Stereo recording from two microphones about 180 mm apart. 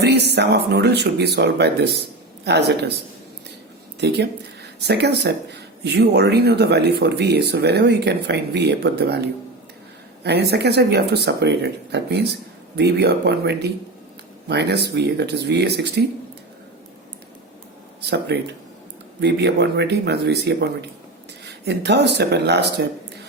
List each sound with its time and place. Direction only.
0.0 s a sound: 65° right (ahead or behind)
0.3 s speech: 70° right (ahead or behind)
4.0 s speech: 70° right (ahead or behind)
18.0 s speech: 65° right (ahead or behind)